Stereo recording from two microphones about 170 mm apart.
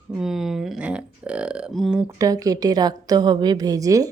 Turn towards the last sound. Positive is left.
turn(degrees=-20)  # may be behind; listen again after turning